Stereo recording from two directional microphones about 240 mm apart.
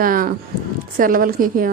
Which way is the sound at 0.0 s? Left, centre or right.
Right.